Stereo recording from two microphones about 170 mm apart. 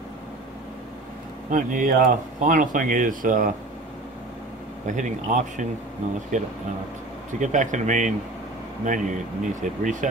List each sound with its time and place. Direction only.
1.5 s speech: 50° right (ahead or behind)
4.8 s speech: 45° right (ahead or behind)